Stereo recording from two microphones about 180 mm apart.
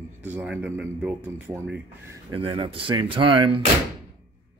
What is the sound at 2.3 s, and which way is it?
Speech, 30° right (ahead or behind).